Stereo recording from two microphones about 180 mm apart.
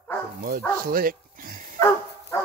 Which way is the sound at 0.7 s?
55° right (ahead or behind).